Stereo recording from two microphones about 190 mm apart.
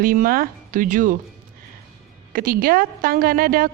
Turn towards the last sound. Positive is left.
turn(degrees=-50)  # may be behind; listen again after turning